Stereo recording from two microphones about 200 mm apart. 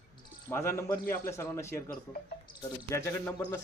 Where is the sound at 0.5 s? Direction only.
10° left (ahead or behind).